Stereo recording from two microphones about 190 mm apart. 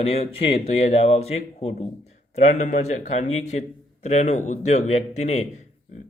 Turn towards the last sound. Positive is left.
turn(degrees=35)  # may be behind; listen again after turning